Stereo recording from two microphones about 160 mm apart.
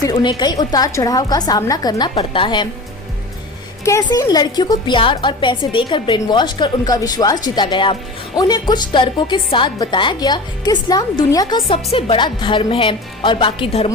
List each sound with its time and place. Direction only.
0.0 s a woman's voice: 25° left (ahead or behind)
3.8 s a woman's voice: 20° left (ahead or behind)